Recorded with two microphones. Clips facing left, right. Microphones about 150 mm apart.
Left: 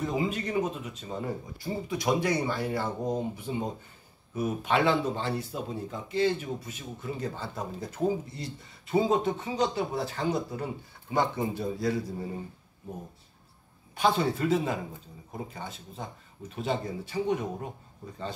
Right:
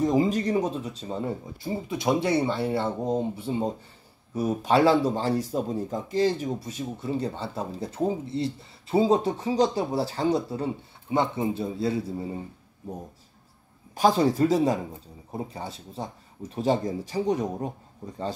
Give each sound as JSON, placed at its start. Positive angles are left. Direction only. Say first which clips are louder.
{"t": 0.0, "sound": "speech", "louder": "right 7 dB", "side_deg": -40}
{"t": 13.9, "sound": "speech", "louder": "right 5 dB", "side_deg": -40}